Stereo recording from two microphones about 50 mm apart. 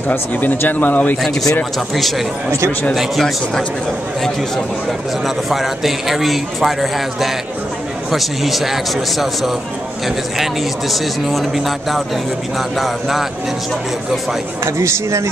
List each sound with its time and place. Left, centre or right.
0.4 s speech: left
2.0 s a man's voice: centre
5.2 s a man's voice: centre
10.0 s a man's voice: centre
14.6 s speech: right